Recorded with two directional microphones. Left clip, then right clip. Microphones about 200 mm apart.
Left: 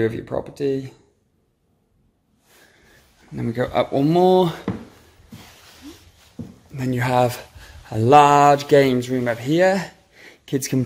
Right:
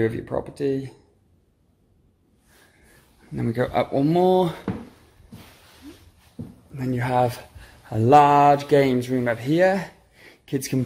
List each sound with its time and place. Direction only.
0.0 s speech: 5° left (ahead or behind)
3.3 s speech: 5° right (ahead or behind)
3.7 s speech: 10° left (ahead or behind)
6.7 s speech: 15° left (ahead or behind)
7.8 s speech: centre (ahead or behind); by 10.8 s 15° left (ahead or behind)